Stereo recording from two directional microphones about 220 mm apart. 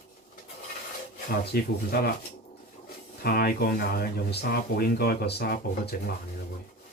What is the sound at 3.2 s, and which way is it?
Speech, 45° left (ahead or behind).